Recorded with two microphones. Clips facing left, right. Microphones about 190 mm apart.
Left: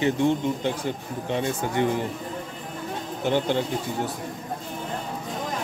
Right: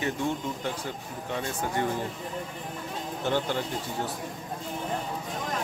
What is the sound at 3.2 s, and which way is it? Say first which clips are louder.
Speech: left 5 dB; 20° left (ahead or behind).